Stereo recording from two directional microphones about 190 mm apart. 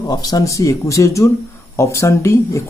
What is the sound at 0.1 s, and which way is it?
Speech, 20° left (ahead or behind).